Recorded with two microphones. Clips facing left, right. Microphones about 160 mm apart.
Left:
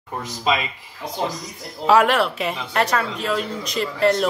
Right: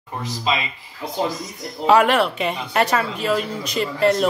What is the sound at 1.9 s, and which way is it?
Speech, centre (ahead or behind).